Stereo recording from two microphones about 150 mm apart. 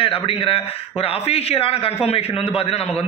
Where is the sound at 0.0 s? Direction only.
35° left (ahead or behind).